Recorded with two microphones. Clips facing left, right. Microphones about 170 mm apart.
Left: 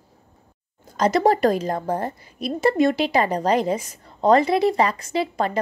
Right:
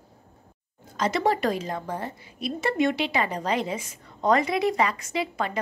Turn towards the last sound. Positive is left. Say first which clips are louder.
# left 5 dB
turn(degrees=35)  # may be behind; listen again after turning